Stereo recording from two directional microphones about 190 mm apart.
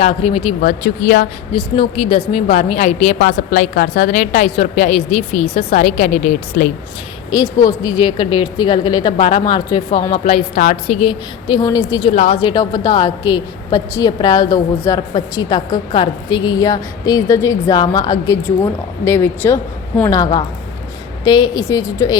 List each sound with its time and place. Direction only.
0.0 s a woman's voice: 30° left (ahead or behind)
0.6 s speech: 45° left (ahead or behind)
1.5 s speech: 30° left (ahead or behind)
7.3 s a woman's voice: 20° left (ahead or behind)
12.1 s a woman's voice: 35° left (ahead or behind); by 22.2 s 20° left (ahead or behind)